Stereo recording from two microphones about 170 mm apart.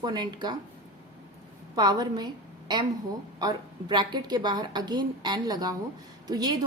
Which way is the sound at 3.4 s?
25° right (ahead or behind).